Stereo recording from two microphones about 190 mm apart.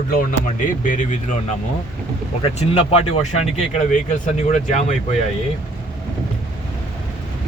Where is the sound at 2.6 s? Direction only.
35° left (ahead or behind).